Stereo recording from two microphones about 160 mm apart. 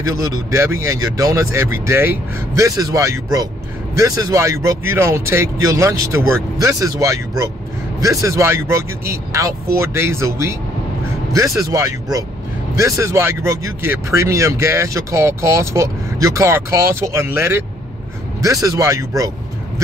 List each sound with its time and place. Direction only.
0.0 s speech: 20° right (ahead or behind)